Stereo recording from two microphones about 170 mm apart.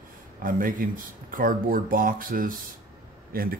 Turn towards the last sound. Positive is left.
turn(degrees=-60)  # may be behind; listen again after turning